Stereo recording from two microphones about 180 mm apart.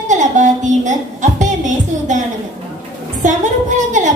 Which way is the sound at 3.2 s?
45° right (ahead or behind).